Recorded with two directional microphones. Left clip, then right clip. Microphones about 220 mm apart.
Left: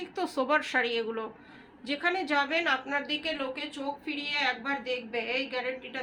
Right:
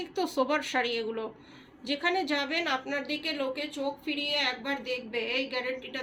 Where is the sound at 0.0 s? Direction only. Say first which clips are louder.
Right 2 dB; 5° left (ahead or behind).